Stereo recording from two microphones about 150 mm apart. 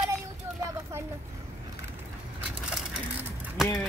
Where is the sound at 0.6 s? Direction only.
20° right (ahead or behind).